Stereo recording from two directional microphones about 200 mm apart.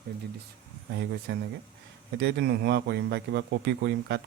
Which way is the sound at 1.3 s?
65° right (ahead or behind).